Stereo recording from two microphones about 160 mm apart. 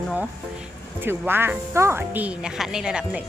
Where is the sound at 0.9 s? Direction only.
15° right (ahead or behind).